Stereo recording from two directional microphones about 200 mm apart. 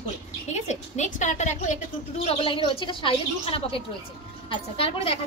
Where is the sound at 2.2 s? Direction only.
25° left (ahead or behind).